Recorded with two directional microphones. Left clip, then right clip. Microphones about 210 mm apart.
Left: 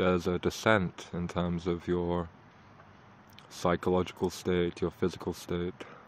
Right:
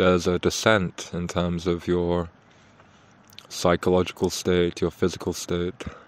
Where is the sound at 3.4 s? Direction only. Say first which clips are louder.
Right 8 dB; 30° right (ahead or behind).